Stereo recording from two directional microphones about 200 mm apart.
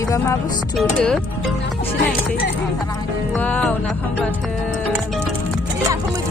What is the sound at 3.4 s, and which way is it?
Speech, 5° left (ahead or behind).